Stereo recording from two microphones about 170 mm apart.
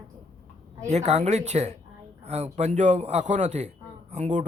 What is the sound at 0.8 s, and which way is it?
Speech, 40° right (ahead or behind).